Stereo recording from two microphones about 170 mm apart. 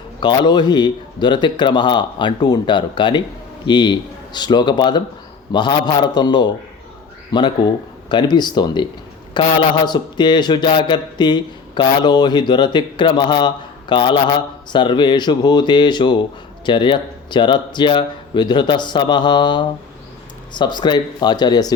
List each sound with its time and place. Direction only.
0.2 s a man's voice: 25° left (ahead or behind)